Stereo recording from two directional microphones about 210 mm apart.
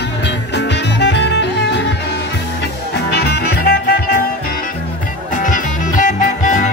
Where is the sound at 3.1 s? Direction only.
50° left (ahead or behind).